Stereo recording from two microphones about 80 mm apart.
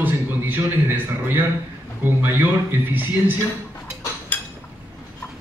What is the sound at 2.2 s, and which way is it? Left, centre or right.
Speech, right.